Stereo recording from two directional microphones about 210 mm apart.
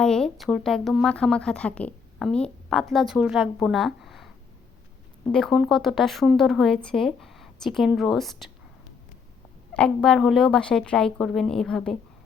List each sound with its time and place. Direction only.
0.0 s speech: 5° left (ahead or behind)
5.3 s speech: centre (ahead or behind)
9.7 s speech: 5° left (ahead or behind)